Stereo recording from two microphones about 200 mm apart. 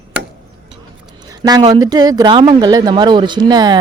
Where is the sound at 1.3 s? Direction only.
20° right (ahead or behind).